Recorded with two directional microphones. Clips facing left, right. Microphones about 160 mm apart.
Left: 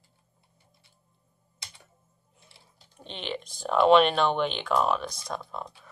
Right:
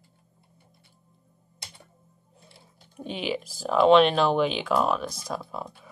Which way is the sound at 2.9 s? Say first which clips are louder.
Right 6 dB; 10° right (ahead or behind).